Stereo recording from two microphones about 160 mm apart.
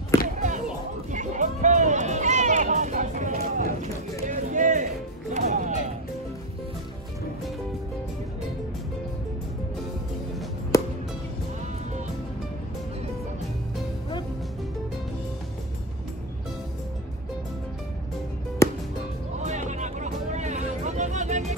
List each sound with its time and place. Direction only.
0.1 s basketball bounce: 20° left (ahead or behind)
1.1 s run: 50° right (ahead or behind)
5.3 s music: 50° right (ahead or behind)
10.7 s music: 20° left (ahead or behind)
18.6 s music: 15° left (ahead or behind)
19.4 s music: 45° right (ahead or behind)